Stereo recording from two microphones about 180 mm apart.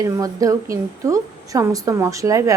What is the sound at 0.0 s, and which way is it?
A woman's voice, 20° right (ahead or behind).